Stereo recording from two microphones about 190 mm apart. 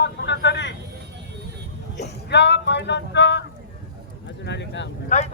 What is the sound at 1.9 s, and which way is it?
Speech, 65° left (ahead or behind).